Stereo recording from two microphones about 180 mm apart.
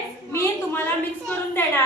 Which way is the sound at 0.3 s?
10° left (ahead or behind).